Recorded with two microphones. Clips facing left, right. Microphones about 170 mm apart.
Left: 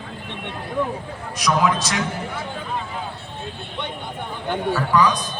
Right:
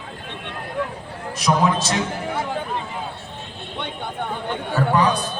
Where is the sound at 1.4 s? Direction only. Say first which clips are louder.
Right 1 dB; 25° right (ahead or behind).